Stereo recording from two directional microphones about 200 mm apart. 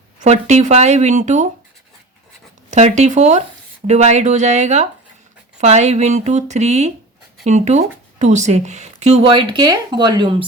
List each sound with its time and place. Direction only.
0.2 s speech: 35° right (ahead or behind)
2.6 s speech: 35° right (ahead or behind)